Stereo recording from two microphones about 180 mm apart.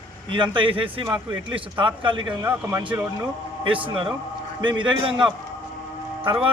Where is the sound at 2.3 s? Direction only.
10° right (ahead or behind).